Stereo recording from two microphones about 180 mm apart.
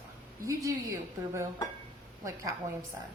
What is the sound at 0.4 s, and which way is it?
A woman's voice, 15° right (ahead or behind).